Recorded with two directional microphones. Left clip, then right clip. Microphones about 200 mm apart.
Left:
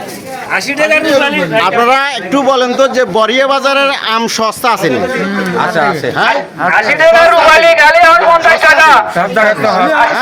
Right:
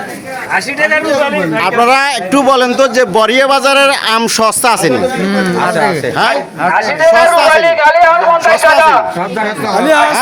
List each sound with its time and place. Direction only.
1.5 s a man's voice: 10° right (ahead or behind)
5.5 s speech: centre (ahead or behind)
7.0 s a man's voice: 20° left (ahead or behind)